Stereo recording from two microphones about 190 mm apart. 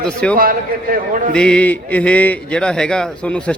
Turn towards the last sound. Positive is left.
turn(degrees=5)  # may be behind; listen again after turning